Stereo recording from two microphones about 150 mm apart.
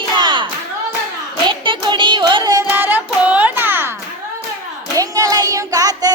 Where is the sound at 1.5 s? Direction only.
35° right (ahead or behind).